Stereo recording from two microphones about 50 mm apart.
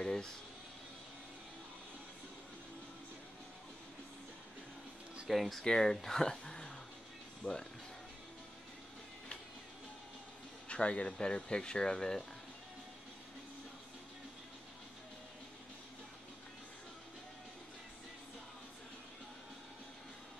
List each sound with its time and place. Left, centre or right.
0.0 s a sound: centre
5.3 s speech: centre
5.6 s speech: centre
7.4 s speech: left
10.7 s speech: left